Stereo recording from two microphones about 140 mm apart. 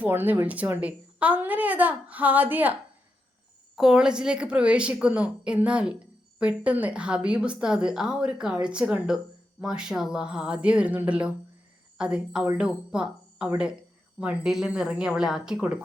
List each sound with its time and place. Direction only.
0.0 s a woman's voice: 15° right (ahead or behind)
3.8 s a woman's voice: 5° right (ahead or behind)